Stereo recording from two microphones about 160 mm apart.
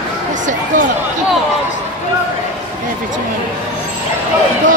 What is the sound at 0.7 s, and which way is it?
Speech, 55° right (ahead or behind).